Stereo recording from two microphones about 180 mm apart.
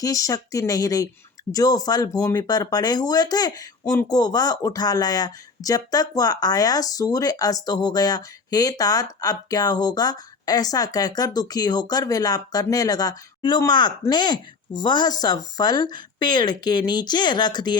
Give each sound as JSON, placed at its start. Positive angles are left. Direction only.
{"t": 0.0, "sound": "speech", "side_deg": 20}